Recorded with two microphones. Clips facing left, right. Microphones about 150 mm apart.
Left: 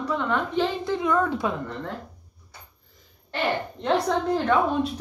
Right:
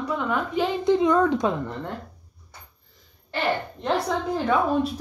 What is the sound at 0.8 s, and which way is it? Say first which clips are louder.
Speech: right 5 dB; 20° right (ahead or behind).